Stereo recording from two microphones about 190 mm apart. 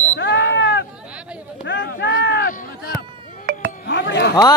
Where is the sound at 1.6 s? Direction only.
65° left (ahead or behind).